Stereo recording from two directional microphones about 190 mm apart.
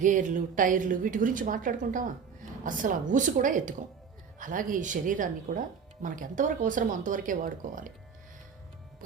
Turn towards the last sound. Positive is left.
turn(degrees=-45)  # may be behind; listen again after turning